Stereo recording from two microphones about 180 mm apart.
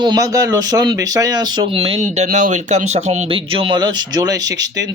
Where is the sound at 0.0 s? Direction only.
20° right (ahead or behind).